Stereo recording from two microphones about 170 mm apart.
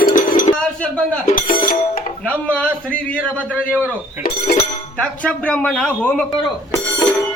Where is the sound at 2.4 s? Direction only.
5° left (ahead or behind).